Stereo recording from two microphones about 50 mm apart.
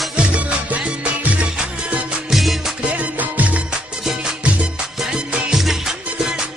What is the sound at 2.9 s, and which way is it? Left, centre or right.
Music, right.